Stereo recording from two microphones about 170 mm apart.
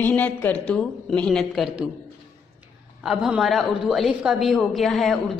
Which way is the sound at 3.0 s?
Centre (ahead or behind).